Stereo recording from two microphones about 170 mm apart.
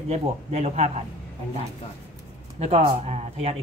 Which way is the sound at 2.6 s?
35° right (ahead or behind).